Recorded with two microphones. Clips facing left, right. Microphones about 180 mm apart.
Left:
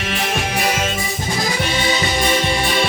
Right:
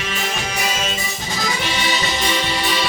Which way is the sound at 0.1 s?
55° left (ahead or behind).